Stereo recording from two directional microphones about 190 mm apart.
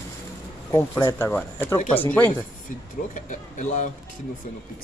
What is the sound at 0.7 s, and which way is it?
Speech, 10° left (ahead or behind).